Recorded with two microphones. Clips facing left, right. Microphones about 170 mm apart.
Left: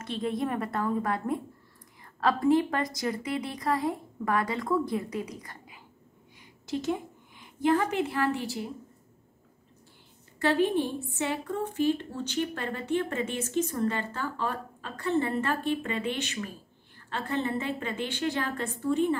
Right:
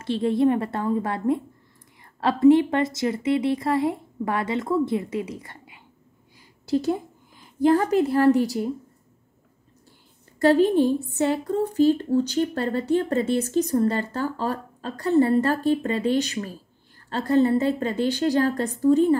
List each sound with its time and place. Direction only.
0.0 s a woman's voice: 30° right (ahead or behind)
10.4 s a woman's voice: 40° right (ahead or behind)